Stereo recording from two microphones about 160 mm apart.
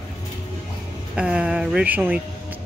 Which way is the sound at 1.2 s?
5° right (ahead or behind).